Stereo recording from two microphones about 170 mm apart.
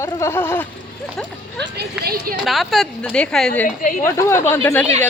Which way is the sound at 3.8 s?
50° left (ahead or behind).